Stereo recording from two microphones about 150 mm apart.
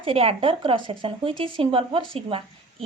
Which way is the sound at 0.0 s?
40° right (ahead or behind).